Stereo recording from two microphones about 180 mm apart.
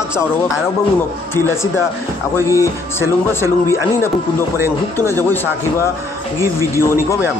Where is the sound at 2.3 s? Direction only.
15° left (ahead or behind).